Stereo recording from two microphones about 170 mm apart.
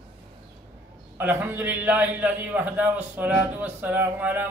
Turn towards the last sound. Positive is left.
turn(degrees=-10)  # may be behind; listen again after turning